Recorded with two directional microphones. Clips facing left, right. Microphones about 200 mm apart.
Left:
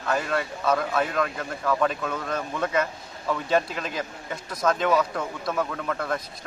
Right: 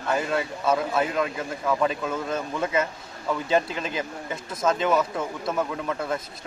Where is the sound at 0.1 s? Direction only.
5° right (ahead or behind).